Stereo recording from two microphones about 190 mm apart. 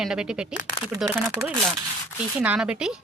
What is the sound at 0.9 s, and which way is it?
Speech, 15° right (ahead or behind).